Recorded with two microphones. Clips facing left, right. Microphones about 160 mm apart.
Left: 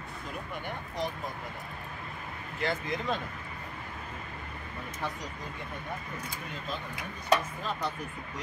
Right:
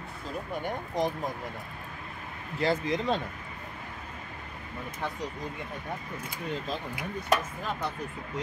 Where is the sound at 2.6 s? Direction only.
35° right (ahead or behind).